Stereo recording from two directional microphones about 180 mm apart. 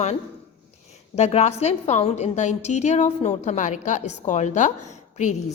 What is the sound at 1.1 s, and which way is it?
A woman's voice, 40° left (ahead or behind).